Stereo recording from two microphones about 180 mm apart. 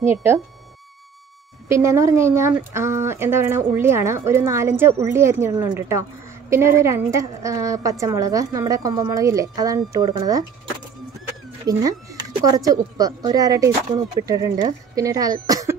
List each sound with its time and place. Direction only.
0.1 s speech: 15° right (ahead or behind)
1.7 s speech: 15° right (ahead or behind)
11.6 s speech: 20° right (ahead or behind)
15.4 s a sound: 20° right (ahead or behind)